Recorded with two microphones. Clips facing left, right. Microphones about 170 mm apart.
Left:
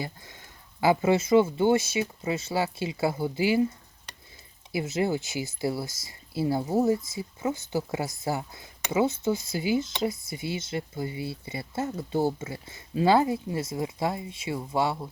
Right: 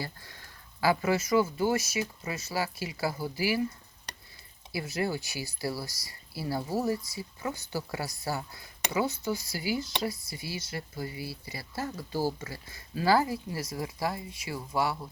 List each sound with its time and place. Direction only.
0.0 s speech: 20° left (ahead or behind)
4.7 s speech: 20° left (ahead or behind)